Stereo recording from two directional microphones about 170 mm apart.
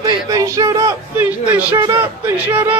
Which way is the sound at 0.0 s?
20° right (ahead or behind).